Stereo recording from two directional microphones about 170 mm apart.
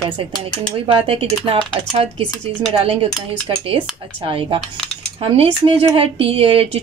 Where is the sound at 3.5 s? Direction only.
30° right (ahead or behind).